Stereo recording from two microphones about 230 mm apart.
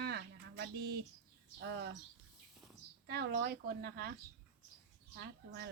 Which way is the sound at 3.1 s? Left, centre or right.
Right.